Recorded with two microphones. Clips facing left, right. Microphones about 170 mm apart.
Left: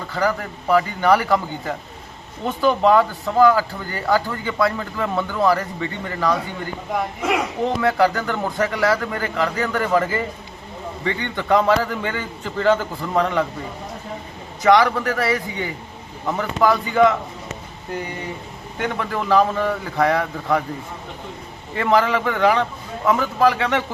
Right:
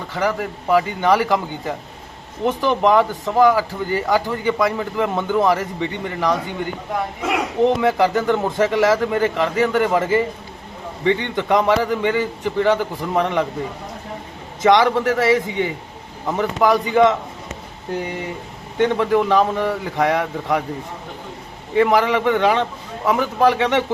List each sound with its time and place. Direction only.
0.1 s speech: 20° right (ahead or behind)
7.2 s speech: 5° right (ahead or behind)
7.6 s a man's voice: 20° right (ahead or behind)
14.6 s speech: 20° right (ahead or behind)
18.8 s a man's voice: 20° right (ahead or behind)
21.8 s speech: 15° right (ahead or behind)